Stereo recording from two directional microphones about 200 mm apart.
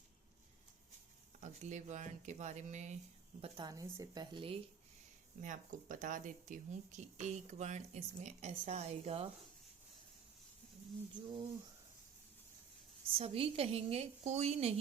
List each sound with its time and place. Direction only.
1.4 s speech: 35° right (ahead or behind)
3.4 s a woman's voice: 20° right (ahead or behind)
5.4 s speech: 40° right (ahead or behind)
11.1 s a woman's voice: 25° right (ahead or behind)
13.1 s speech: 30° right (ahead or behind)